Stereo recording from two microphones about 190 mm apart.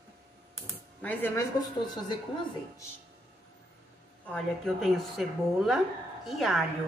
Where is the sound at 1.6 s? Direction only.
25° left (ahead or behind).